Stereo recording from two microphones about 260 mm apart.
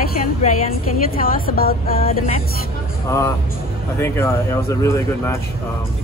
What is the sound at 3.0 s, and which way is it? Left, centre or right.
Speech, centre.